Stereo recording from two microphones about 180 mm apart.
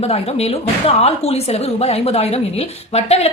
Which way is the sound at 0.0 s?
35° left (ahead or behind).